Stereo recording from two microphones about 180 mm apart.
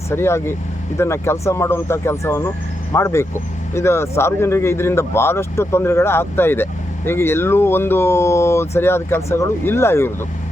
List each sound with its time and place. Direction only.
0.1 s speech: 15° left (ahead or behind)